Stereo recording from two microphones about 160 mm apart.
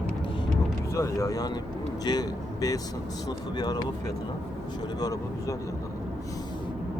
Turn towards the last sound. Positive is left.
turn(degrees=20)  # may be behind; listen again after turning